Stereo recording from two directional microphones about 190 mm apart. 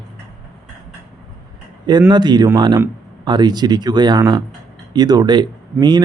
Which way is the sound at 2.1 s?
25° right (ahead or behind).